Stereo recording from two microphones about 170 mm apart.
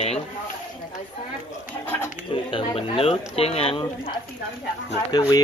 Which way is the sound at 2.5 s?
35° left (ahead or behind).